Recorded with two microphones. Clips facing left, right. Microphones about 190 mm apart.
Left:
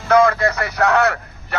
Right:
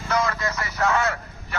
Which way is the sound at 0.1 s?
60° left (ahead or behind).